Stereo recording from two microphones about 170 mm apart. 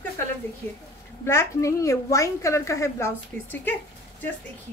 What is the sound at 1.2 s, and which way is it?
A woman's voice, 15° left (ahead or behind).